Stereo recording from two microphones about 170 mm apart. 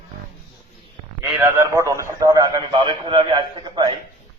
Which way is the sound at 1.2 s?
15° right (ahead or behind).